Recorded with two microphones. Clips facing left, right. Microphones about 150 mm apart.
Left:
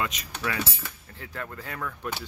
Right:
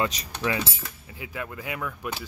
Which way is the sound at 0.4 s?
20° right (ahead or behind).